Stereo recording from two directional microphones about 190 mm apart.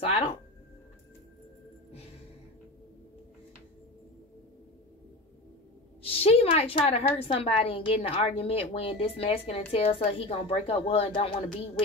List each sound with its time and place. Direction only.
0.0 s a woman's voice: 30° left (ahead or behind)
6.0 s a woman's voice: 30° left (ahead or behind)